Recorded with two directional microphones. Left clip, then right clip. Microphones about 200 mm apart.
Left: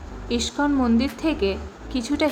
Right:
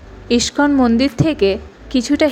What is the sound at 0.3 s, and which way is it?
A woman's voice, 30° right (ahead or behind).